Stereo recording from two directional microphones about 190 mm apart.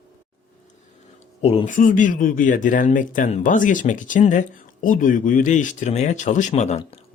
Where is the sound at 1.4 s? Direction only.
35° left (ahead or behind).